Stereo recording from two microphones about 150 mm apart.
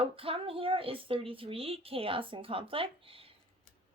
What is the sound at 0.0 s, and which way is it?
A woman's voice, 40° right (ahead or behind).